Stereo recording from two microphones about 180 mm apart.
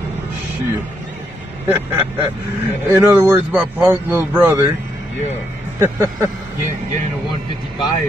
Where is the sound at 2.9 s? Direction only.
15° right (ahead or behind).